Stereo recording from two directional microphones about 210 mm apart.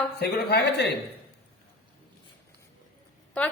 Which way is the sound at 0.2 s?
50° left (ahead or behind).